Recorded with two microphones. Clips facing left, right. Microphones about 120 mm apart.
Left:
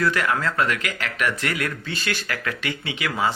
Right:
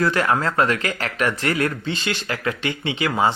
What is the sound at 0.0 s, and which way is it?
Speech, 30° right (ahead or behind).